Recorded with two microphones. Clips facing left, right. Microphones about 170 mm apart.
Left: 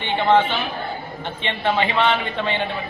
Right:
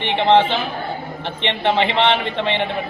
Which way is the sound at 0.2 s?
25° right (ahead or behind).